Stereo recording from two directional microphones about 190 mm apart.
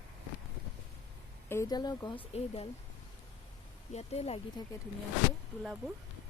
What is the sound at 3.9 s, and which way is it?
Speech, 35° left (ahead or behind).